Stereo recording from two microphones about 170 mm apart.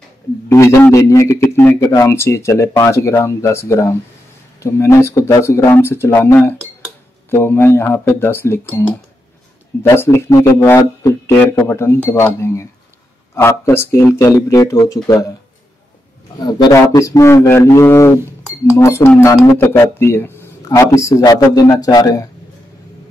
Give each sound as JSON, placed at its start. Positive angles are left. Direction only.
{"t": 0.5, "sound": "speech", "side_deg": 15}
{"t": 16.4, "sound": "speech", "side_deg": 20}